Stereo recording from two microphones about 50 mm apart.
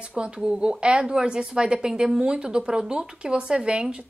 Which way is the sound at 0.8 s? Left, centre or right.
Centre.